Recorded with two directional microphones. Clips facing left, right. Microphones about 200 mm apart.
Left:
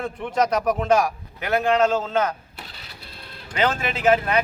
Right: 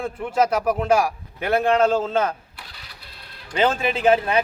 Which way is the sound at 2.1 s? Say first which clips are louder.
Right 1 dB; 30° right (ahead or behind).